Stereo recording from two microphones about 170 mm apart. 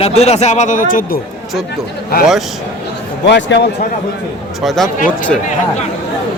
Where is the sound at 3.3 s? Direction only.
90° left.